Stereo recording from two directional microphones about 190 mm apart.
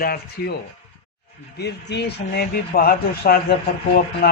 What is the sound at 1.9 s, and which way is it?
Speech, 55° left (ahead or behind).